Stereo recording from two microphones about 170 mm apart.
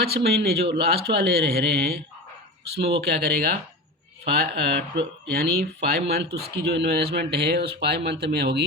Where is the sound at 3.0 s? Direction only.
70° right (ahead or behind).